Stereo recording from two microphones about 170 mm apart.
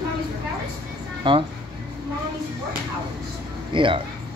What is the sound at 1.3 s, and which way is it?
Speech, 25° right (ahead or behind).